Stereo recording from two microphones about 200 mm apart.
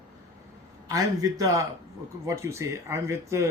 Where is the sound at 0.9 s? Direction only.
15° right (ahead or behind).